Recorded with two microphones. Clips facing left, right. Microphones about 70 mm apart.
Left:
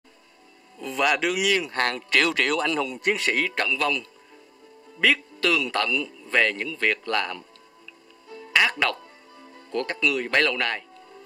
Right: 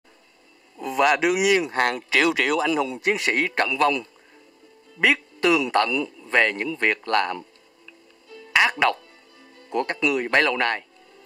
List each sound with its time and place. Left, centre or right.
0.7 s speech: centre
3.4 s a man's voice: right
8.5 s speech: centre